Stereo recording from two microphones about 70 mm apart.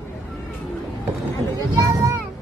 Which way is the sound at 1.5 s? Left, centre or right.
Right.